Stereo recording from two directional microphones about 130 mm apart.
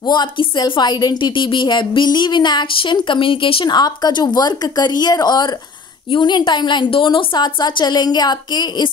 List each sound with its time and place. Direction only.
0.0 s a woman's voice: 35° left (ahead or behind)